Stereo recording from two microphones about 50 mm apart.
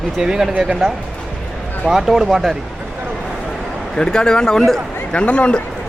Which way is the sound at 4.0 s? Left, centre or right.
Centre.